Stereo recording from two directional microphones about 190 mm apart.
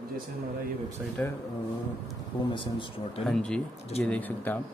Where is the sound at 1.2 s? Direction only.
10° left (ahead or behind).